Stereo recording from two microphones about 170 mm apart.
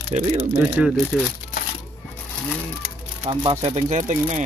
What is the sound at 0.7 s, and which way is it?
Speech, 5° right (ahead or behind).